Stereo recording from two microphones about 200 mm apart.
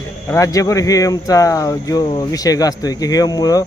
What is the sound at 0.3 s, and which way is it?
Speech, 15° left (ahead or behind).